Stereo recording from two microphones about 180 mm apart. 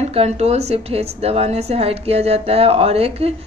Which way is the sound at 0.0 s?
35° right (ahead or behind).